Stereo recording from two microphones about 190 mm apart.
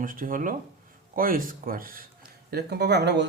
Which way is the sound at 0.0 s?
45° right (ahead or behind).